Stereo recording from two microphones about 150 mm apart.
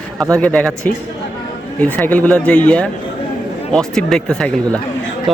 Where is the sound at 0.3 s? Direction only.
5° left (ahead or behind).